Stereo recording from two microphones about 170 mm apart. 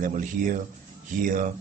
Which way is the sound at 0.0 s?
50° right (ahead or behind).